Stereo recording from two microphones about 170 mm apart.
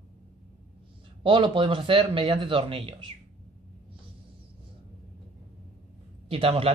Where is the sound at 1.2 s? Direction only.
30° right (ahead or behind).